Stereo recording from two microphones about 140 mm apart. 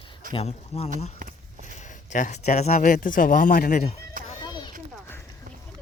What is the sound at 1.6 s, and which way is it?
Speech, 60° left (ahead or behind).